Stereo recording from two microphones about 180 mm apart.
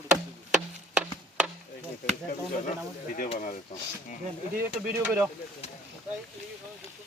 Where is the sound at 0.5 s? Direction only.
5° right (ahead or behind).